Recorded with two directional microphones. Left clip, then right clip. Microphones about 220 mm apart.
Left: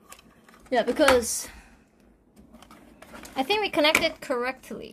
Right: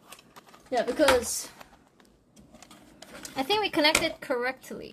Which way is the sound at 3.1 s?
5° left (ahead or behind).